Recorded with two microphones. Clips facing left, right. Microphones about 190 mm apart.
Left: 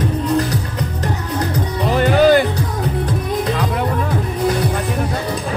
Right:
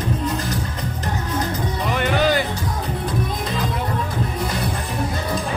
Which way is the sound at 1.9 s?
40° left (ahead or behind).